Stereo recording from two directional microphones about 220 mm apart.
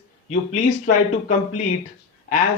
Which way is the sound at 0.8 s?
40° left (ahead or behind).